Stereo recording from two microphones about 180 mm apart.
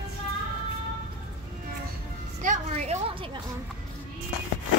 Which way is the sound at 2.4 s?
45° right (ahead or behind).